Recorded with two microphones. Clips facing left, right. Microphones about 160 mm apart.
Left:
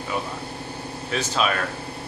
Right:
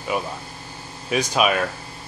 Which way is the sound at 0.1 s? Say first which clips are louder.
Even; 15° right (ahead or behind).